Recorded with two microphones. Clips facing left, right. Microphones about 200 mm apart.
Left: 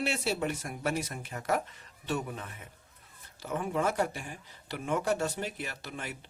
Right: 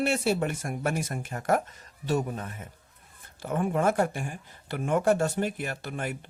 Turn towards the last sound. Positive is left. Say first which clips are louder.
# right 7 dB
turn(degrees=-50)  # may be behind; listen again after turning